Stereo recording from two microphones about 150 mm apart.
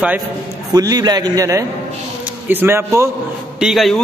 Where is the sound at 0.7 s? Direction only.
25° right (ahead or behind).